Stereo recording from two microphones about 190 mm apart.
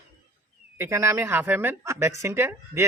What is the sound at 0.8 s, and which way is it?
Speech, 15° right (ahead or behind).